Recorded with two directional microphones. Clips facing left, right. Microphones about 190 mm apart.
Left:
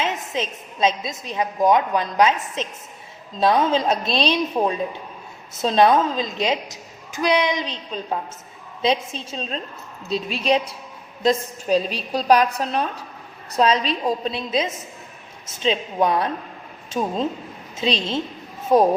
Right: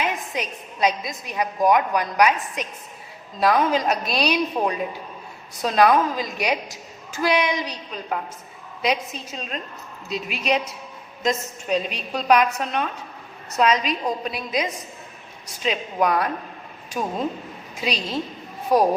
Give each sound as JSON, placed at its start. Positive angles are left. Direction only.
{"t": 0.0, "sound": "a woman's voice", "side_deg": 25}
{"t": 4.6, "sound": "a woman's voice", "side_deg": 15}
{"t": 5.5, "sound": "a woman's voice", "side_deg": 25}